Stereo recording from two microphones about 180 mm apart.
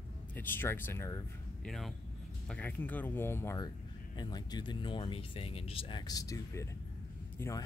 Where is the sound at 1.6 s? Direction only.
Centre (ahead or behind).